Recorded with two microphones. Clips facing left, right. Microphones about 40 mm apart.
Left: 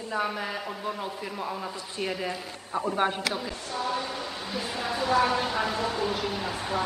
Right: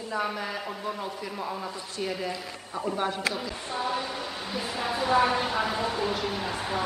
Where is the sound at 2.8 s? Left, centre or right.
Left.